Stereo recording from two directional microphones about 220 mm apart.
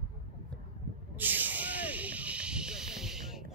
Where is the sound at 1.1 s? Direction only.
10° right (ahead or behind).